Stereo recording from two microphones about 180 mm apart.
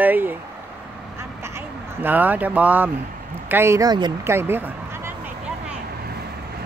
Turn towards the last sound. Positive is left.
turn(degrees=-60)  # may be behind; listen again after turning